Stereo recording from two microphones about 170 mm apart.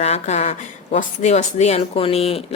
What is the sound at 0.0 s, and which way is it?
Speech, 40° left (ahead or behind).